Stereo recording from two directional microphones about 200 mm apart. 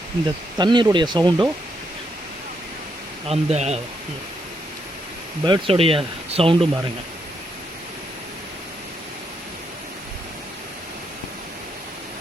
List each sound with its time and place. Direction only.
0.5 s speech: 20° right (ahead or behind)
3.2 s speech: 30° right (ahead or behind)
5.5 s speech: 30° right (ahead or behind)